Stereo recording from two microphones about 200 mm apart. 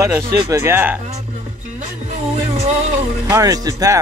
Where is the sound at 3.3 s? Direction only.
15° right (ahead or behind).